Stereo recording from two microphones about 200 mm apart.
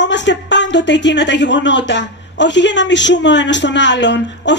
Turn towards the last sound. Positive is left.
turn(degrees=60)  # may be behind; listen again after turning